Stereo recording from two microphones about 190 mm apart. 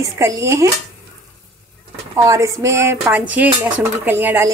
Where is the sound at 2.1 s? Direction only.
15° right (ahead or behind).